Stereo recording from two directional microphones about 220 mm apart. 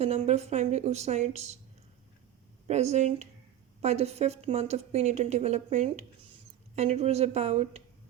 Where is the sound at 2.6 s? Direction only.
30° right (ahead or behind).